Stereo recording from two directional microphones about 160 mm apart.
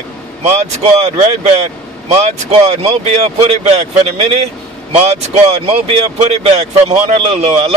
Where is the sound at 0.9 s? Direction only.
45° right (ahead or behind).